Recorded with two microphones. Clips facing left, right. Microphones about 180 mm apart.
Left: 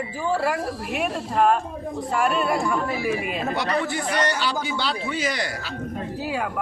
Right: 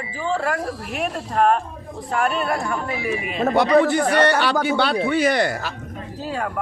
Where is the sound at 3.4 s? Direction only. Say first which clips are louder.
Right 13 dB; 55° right (ahead or behind).